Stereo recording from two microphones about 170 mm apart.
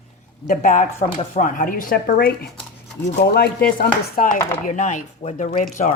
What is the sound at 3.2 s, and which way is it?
Speech, 70° left (ahead or behind).